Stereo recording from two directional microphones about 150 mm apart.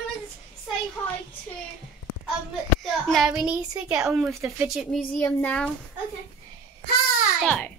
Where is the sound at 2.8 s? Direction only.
Centre (ahead or behind).